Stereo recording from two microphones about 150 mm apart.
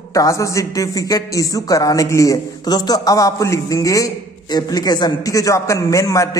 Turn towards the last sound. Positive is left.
turn(degrees=20)  # may be behind; listen again after turning